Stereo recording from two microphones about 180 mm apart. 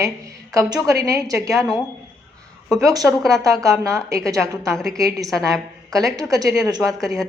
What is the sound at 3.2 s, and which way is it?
A woman's voice, 20° right (ahead or behind).